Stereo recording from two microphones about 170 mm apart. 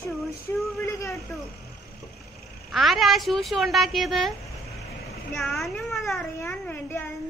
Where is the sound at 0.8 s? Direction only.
15° left (ahead or behind).